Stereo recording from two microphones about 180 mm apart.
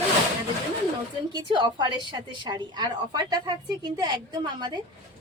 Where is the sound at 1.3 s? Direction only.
25° right (ahead or behind).